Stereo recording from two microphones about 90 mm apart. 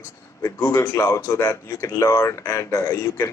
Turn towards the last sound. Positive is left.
turn(degrees=30)  # may be behind; listen again after turning